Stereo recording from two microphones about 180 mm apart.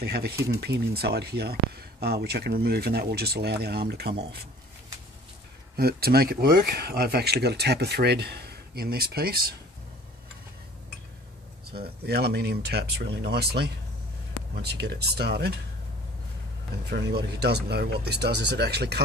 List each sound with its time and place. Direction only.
0.0 s speech: 60° right (ahead or behind)
5.8 s speech: 60° right (ahead or behind)
11.8 s speech: 65° right (ahead or behind)
16.9 s speech: 65° right (ahead or behind)